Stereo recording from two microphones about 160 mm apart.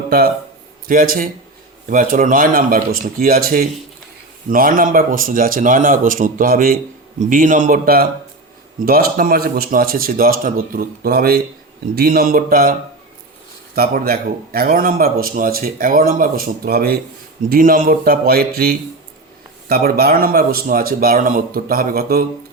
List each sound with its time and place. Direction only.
0.9 s a man's voice: 65° right (ahead or behind)
13.7 s a man's voice: 70° right (ahead or behind)
17.5 s a man's voice: 60° right (ahead or behind)